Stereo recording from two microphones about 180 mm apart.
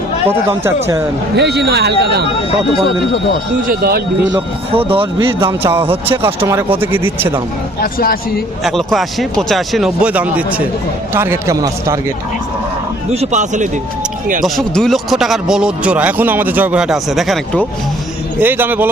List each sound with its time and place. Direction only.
0.3 s speech: 15° right (ahead or behind)
1.4 s speech: 65° right (ahead or behind)
3.7 s speech: 55° right (ahead or behind)
4.3 s speech: 30° right (ahead or behind)
5.5 s speech: 15° right (ahead or behind)
7.8 s speech: 55° left (ahead or behind)
8.6 s speech: centre (ahead or behind); by 12.1 s 15° right (ahead or behind)
13.1 s speech: 40° right (ahead or behind)
14.4 s speech: centre (ahead or behind)
18.3 s speech: 10° right (ahead or behind)